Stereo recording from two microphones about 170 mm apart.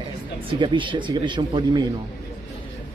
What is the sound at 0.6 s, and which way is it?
Speech, 30° right (ahead or behind).